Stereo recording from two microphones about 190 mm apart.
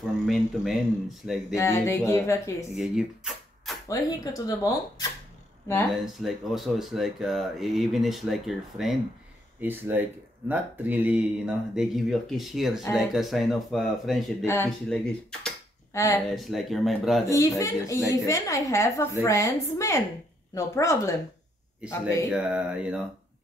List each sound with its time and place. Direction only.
0.0 s speech: centre (ahead or behind)
1.5 s a woman's voice: 15° left (ahead or behind)
2.7 s speech: 5° right (ahead or behind)
3.9 s speech: 20° left (ahead or behind)
6.2 s speech: centre (ahead or behind)
14.4 s a woman's voice: 15° left (ahead or behind)
16.4 s speech: centre (ahead or behind)
17.3 s a woman's voice: 15° left (ahead or behind)
21.8 s speech: 5° right (ahead or behind)